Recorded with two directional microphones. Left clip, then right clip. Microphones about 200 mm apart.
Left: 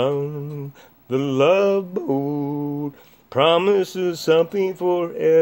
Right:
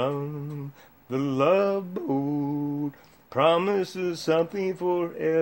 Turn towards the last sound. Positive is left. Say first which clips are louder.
# left 7 dB
turn(degrees=40)  # may be behind; listen again after turning